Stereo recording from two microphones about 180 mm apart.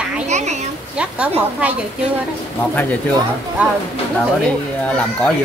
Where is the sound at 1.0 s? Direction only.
5° right (ahead or behind).